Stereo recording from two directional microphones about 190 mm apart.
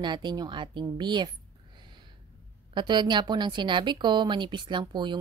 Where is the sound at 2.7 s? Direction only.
25° right (ahead or behind).